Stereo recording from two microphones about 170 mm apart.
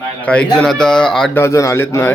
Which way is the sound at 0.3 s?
5° left (ahead or behind).